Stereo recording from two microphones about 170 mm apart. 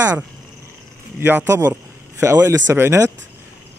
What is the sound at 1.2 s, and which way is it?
Speech, 10° right (ahead or behind).